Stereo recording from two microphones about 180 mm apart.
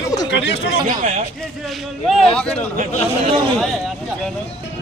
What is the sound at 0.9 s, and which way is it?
Speech, 45° right (ahead or behind).